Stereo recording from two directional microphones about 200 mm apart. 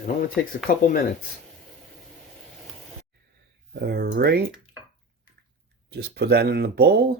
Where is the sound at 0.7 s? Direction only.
45° left (ahead or behind).